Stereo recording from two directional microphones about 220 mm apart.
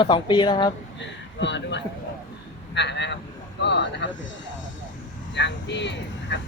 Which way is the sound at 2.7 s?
50° left (ahead or behind).